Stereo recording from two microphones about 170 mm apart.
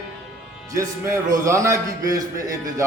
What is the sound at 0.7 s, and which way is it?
A man's voice, 15° right (ahead or behind).